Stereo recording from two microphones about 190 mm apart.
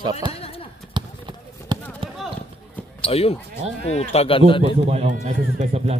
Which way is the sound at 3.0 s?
30° left (ahead or behind).